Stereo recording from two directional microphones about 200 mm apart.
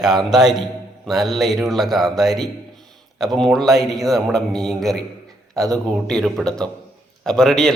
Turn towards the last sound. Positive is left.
turn(degrees=0)  # may be behind; listen again after turning